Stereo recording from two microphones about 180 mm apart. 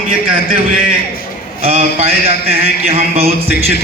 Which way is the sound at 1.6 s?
30° right (ahead or behind).